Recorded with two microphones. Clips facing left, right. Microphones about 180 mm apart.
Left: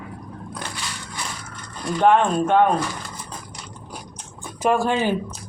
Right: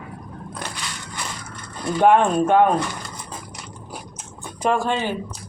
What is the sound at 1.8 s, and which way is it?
Speech, 10° right (ahead or behind).